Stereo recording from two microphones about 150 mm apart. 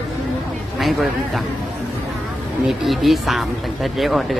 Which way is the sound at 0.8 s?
Centre (ahead or behind).